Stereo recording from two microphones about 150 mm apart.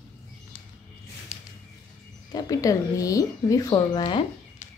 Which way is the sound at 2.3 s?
25° left (ahead or behind).